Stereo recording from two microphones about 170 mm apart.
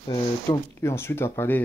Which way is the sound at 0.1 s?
20° left (ahead or behind).